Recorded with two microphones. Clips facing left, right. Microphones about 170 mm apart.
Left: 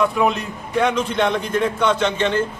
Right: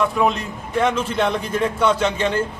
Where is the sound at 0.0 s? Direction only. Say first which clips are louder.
Left 1 dB; centre (ahead or behind).